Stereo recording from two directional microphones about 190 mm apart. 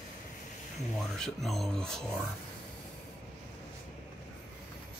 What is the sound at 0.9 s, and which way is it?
Speech, centre (ahead or behind).